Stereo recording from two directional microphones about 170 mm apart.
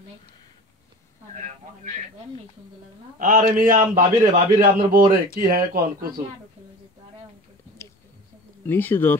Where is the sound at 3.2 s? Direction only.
50° right (ahead or behind).